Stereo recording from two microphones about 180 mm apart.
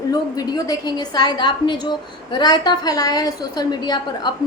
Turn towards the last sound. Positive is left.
turn(degrees=25)  # may be behind; listen again after turning